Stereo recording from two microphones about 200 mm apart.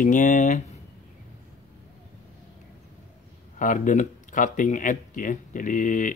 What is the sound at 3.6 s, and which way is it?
Speech, 40° left (ahead or behind).